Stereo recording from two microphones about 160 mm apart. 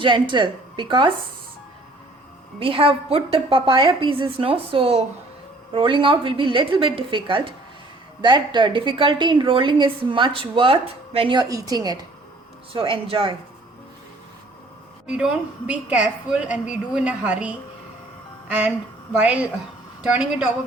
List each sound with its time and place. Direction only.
0.0 s a woman's voice: 30° right (ahead or behind)
2.6 s a woman's voice: 35° right (ahead or behind)
15.0 s a woman's voice: 5° right (ahead or behind)